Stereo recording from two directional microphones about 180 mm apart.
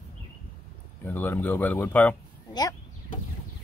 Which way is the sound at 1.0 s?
10° left (ahead or behind).